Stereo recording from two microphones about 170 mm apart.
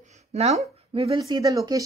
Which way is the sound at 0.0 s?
40° right (ahead or behind).